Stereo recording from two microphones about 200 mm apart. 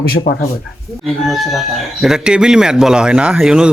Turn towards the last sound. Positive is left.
turn(degrees=-5)  # may be behind; listen again after turning